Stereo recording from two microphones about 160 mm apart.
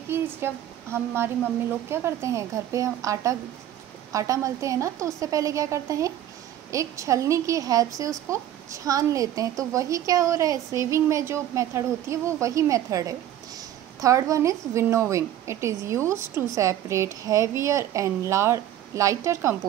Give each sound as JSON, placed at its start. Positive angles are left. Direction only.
{"t": 0.4, "sound": "a woman's voice", "side_deg": -15}